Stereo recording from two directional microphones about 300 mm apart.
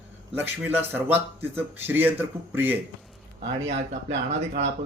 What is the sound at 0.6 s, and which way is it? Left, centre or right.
Speech, centre.